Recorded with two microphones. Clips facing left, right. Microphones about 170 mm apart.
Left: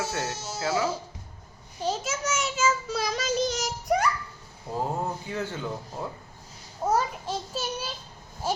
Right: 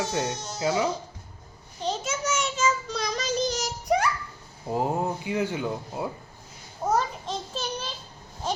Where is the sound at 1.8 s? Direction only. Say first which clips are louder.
Even; 5° left (ahead or behind).